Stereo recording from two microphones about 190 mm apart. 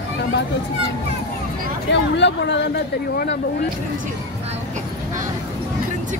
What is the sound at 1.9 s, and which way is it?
Speech, 65° left (ahead or behind).